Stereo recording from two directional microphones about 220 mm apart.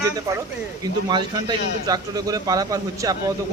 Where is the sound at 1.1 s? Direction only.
20° right (ahead or behind).